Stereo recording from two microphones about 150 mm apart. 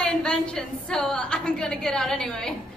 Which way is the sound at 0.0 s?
5° left (ahead or behind).